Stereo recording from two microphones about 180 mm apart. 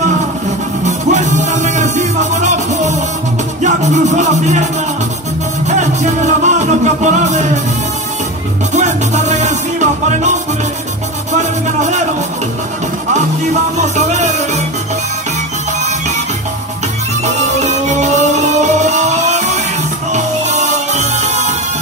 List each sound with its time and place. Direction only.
0.8 s music: 40° right (ahead or behind)
5.7 s music: 40° right (ahead or behind)
8.7 s music: 40° right (ahead or behind)
13.7 s music: 40° right (ahead or behind)
17.6 s music: 40° right (ahead or behind)